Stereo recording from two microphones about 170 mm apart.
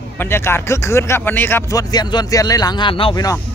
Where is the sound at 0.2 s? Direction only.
15° left (ahead or behind); by 3.3 s 30° left (ahead or behind).